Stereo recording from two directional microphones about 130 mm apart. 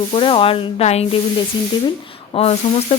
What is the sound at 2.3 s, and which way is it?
Speech, 50° left (ahead or behind).